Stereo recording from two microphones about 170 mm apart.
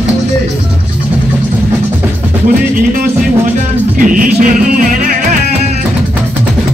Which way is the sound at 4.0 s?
55° right (ahead or behind).